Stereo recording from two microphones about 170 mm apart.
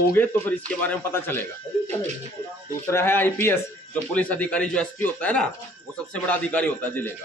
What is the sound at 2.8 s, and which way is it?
A man's voice, 15° left (ahead or behind).